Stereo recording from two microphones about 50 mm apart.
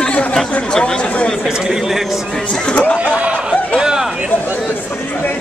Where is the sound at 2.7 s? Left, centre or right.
Left.